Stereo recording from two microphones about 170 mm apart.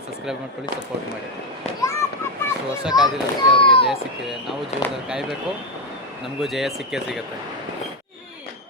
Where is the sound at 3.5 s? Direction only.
30° left (ahead or behind).